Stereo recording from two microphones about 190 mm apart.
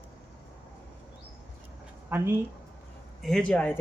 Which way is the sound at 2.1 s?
10° right (ahead or behind).